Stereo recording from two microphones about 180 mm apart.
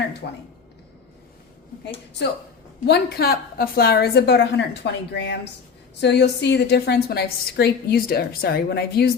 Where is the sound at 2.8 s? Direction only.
60° left (ahead or behind).